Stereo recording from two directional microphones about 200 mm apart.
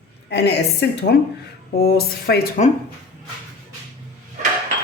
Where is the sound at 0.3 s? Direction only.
55° left (ahead or behind).